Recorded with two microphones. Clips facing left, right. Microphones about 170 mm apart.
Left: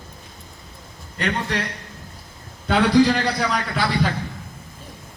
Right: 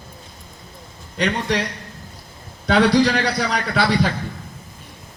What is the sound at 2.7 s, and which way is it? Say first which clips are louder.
Speech: right 1 dB; 75° right (ahead or behind).